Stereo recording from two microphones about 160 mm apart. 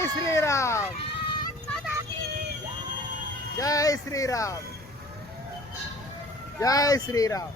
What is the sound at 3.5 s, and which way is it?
Speech, 20° left (ahead or behind).